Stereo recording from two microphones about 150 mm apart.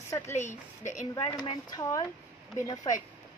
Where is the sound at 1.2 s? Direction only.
30° left (ahead or behind).